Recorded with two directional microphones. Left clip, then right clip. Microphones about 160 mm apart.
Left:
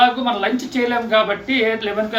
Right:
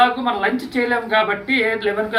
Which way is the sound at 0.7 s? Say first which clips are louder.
Left 2 dB; 20° left (ahead or behind).